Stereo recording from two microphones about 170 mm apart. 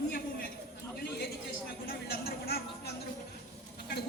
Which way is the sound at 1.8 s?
65° left (ahead or behind).